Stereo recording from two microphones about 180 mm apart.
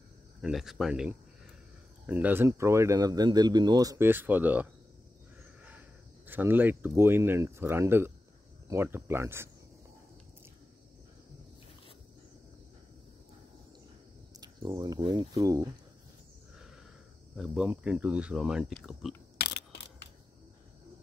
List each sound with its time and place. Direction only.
0.4 s speech: centre (ahead or behind)
5.7 s speech: 10° right (ahead or behind)
14.3 s speech: 20° right (ahead or behind)
17.4 s speech: 5° right (ahead or behind)
19.3 s a sound: 65° left (ahead or behind)